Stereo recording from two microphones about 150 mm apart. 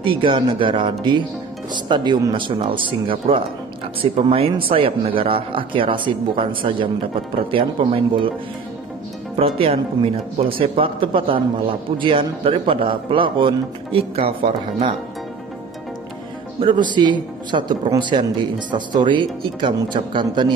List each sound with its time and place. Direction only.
0.0 s speech: 35° right (ahead or behind)
9.6 s speech: 40° right (ahead or behind)
16.6 s speech: 30° right (ahead or behind)